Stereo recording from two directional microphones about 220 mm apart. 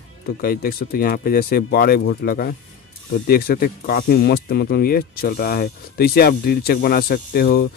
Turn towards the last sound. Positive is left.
turn(degrees=45)  # may be behind; listen again after turning